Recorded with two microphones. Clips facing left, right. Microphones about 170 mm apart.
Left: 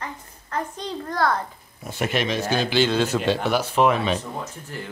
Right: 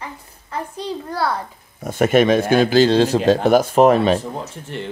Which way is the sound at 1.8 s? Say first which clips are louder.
Right 10 dB; 50° right (ahead or behind).